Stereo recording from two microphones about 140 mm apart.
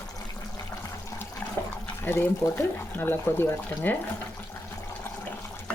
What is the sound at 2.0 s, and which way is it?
Speech, 15° left (ahead or behind).